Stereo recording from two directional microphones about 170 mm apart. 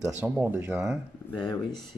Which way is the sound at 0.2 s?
10° right (ahead or behind).